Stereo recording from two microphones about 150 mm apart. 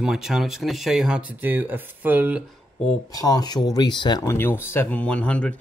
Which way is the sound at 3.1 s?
25° left (ahead or behind).